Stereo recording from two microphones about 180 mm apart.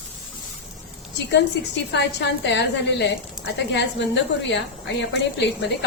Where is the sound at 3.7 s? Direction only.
80° left.